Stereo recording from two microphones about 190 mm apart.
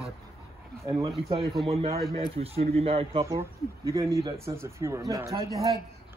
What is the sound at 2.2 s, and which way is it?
Speech, 30° right (ahead or behind).